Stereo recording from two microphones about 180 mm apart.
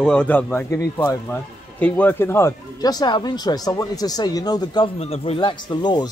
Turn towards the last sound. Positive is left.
turn(degrees=25)  # may be behind; listen again after turning